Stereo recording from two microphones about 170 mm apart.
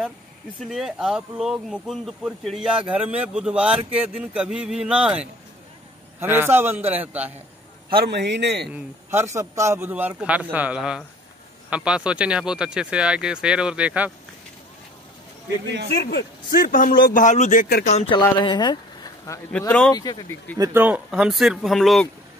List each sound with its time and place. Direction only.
0.6 s a man's voice: centre (ahead or behind)
7.9 s a man's voice: 75° right (ahead or behind)
8.7 s a man's voice: 15° right (ahead or behind)
16.0 s speech: 80° left; by 17.8 s 55° left (ahead or behind)
17.8 s speech: 40° left (ahead or behind)
18.4 s speech: 25° left (ahead or behind)
20.5 s speech: 20° right (ahead or behind)
20.8 s speech: 5° right (ahead or behind)